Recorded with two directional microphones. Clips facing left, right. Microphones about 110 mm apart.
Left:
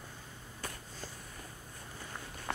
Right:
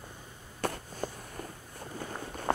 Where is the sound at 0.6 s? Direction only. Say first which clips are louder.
Right 11 dB; 65° right (ahead or behind).